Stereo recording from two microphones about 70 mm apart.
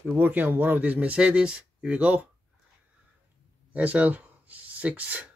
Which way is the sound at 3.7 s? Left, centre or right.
Right.